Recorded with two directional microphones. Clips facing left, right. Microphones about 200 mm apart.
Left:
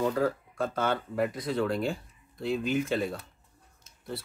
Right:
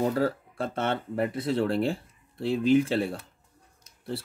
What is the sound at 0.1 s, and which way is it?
Speech, 30° right (ahead or behind).